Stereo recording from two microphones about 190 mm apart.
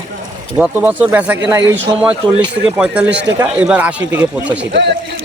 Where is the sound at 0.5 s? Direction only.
10° right (ahead or behind).